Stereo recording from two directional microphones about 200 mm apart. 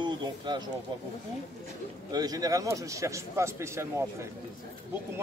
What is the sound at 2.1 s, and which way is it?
A man's voice, 20° right (ahead or behind).